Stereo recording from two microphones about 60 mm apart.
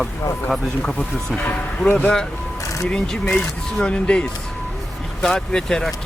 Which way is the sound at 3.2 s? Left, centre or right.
Left.